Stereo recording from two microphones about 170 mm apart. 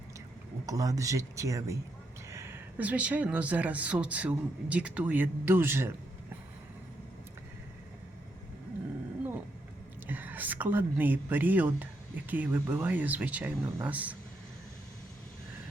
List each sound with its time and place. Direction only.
0.6 s a woman's voice: 20° right (ahead or behind)
10.1 s a woman's voice: 10° right (ahead or behind)